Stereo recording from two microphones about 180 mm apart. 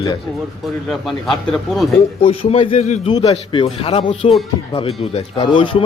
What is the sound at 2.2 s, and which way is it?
Speech, 30° left (ahead or behind).